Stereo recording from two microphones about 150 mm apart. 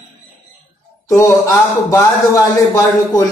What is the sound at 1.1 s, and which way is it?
A man's voice, 20° left (ahead or behind).